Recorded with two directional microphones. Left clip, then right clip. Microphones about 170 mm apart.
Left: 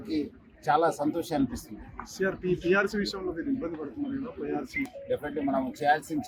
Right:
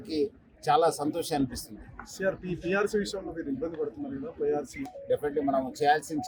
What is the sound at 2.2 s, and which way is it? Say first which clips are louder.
Speech: left 2 dB; 90° right.